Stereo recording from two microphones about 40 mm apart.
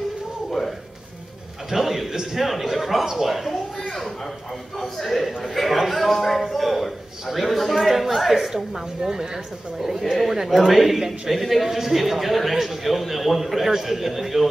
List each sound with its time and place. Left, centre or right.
0.5 s music: centre
1.7 s a sound: centre
2.3 s a man's voice: centre
4.9 s a man's voice: centre